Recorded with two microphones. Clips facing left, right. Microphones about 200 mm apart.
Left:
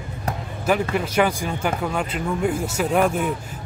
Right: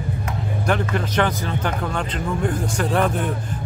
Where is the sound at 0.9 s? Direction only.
10° left (ahead or behind).